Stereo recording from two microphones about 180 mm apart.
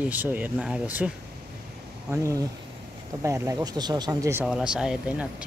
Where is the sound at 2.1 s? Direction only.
15° right (ahead or behind).